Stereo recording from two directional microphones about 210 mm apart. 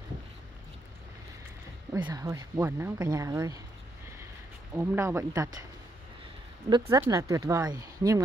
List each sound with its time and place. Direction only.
2.0 s speech: 20° right (ahead or behind)
4.7 s speech: 10° right (ahead or behind)
6.9 s speech: 15° right (ahead or behind)